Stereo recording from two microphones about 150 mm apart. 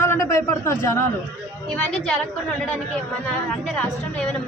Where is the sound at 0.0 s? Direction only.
15° left (ahead or behind).